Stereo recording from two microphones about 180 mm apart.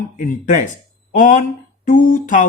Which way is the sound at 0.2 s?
45° left (ahead or behind).